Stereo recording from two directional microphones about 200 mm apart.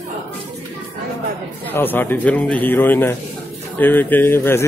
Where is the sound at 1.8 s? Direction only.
10° left (ahead or behind).